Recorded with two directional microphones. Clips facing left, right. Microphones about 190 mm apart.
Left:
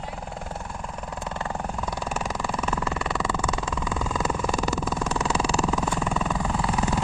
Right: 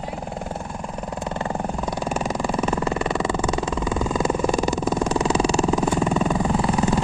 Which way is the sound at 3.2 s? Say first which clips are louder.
Right 5 dB; 20° right (ahead or behind).